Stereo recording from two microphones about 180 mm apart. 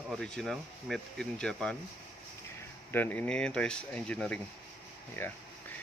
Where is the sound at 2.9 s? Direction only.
10° left (ahead or behind).